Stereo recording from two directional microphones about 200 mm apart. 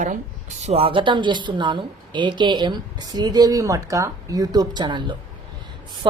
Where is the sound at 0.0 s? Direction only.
35° right (ahead or behind).